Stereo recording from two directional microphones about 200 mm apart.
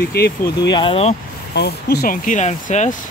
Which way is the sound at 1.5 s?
55° left (ahead or behind).